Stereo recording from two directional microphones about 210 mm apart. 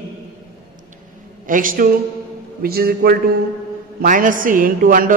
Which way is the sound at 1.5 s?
40° right (ahead or behind).